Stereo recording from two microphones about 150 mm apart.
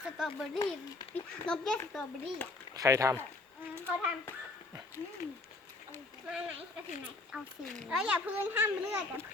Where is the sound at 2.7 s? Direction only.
20° right (ahead or behind).